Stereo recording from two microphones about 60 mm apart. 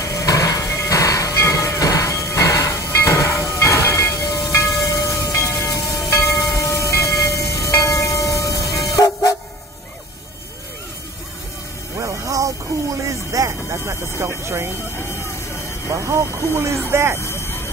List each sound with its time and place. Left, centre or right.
0.0 s hammer: left
0.7 s music: left
1.9 s train: left
8.9 s vehicle: left
12.0 s music: right
13.1 s vehicle: right
16.1 s vehicle: right
16.5 s a sound: right
17.2 s vehicle: left